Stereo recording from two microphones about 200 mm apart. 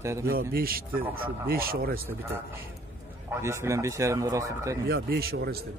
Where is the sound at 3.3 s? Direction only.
15° right (ahead or behind).